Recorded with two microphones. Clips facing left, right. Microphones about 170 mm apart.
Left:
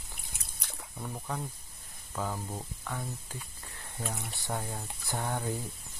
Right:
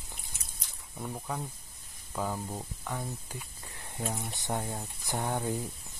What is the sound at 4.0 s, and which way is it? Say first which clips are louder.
Speech: right 3 dB; 20° right (ahead or behind).